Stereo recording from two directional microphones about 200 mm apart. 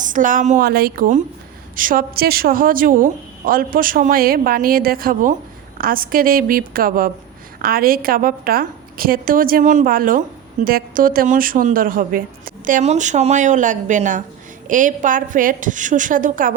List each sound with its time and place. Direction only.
0.1 s a woman's voice: 40° right (ahead or behind)